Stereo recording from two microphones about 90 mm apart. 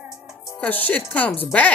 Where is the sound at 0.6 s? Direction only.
15° left (ahead or behind).